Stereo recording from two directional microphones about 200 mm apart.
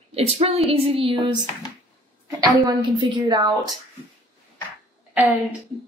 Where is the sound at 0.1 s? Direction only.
30° right (ahead or behind).